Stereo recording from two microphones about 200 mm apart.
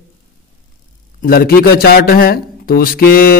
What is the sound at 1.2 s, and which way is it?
A man's voice, 45° left (ahead or behind).